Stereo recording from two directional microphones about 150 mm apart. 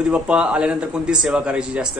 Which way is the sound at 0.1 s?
10° right (ahead or behind).